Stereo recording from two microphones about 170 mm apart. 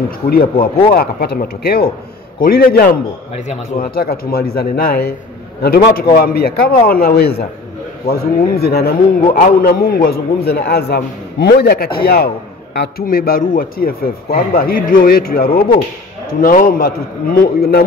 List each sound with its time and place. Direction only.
0.3 s a man's voice: 60° left (ahead or behind)